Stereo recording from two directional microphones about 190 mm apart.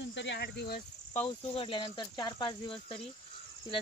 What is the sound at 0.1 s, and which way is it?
Speech, 65° left (ahead or behind).